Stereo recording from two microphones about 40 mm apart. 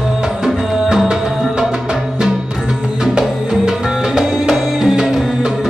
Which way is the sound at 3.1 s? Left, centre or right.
Centre.